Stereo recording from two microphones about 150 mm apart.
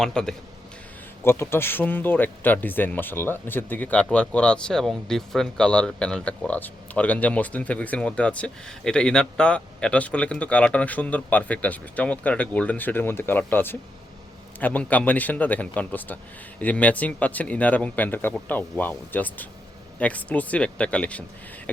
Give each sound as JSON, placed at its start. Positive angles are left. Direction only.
{"t": 0.0, "sound": "a man's voice", "side_deg": 5}
{"t": 1.2, "sound": "speech", "side_deg": 15}